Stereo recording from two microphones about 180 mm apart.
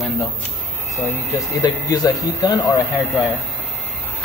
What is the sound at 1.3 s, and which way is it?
Speech, 20° left (ahead or behind).